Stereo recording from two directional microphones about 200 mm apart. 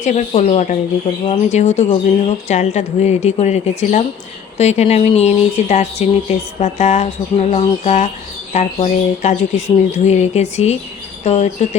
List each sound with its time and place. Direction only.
0.0 s speech: 35° left (ahead or behind)